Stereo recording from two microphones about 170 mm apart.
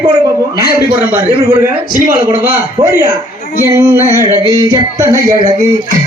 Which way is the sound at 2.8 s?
15° right (ahead or behind).